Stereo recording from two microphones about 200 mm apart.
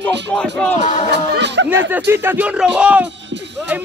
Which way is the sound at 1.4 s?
60° right (ahead or behind).